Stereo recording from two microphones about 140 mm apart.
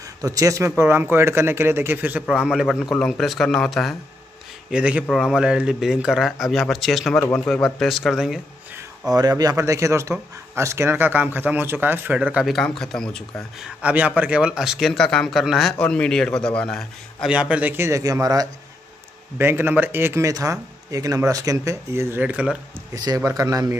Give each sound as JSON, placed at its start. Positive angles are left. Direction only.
{"t": 0.2, "sound": "speech", "side_deg": -25}
{"t": 7.2, "sound": "a man's voice", "side_deg": 20}
{"t": 7.4, "sound": "speech", "side_deg": 5}
{"t": 9.1, "sound": "speech", "side_deg": -25}
{"t": 13.7, "sound": "speech", "side_deg": -10}
{"t": 17.3, "sound": "speech", "side_deg": -10}
{"t": 22.9, "sound": "speech", "side_deg": -25}